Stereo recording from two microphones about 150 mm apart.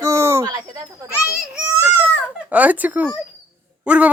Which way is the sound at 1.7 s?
20° right (ahead or behind).